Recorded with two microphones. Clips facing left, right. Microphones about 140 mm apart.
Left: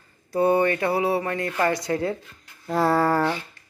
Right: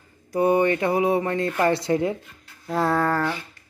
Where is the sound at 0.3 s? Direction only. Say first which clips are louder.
Right 1 dB; 15° right (ahead or behind).